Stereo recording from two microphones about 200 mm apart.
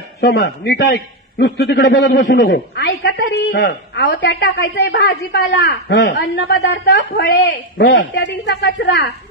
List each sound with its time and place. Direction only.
0.2 s a woman's voice: 55° left (ahead or behind)
2.2 s a man's voice: 45° left (ahead or behind)
2.8 s a woman's voice: 60° left (ahead or behind)
6.4 s a man's voice: 45° left (ahead or behind)
7.9 s a woman's voice: 65° left (ahead or behind)